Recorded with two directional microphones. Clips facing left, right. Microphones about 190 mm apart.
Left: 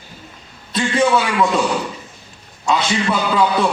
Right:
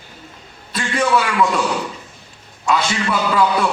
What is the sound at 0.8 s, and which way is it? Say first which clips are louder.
Speech: left 4 dB; 20° left (ahead or behind).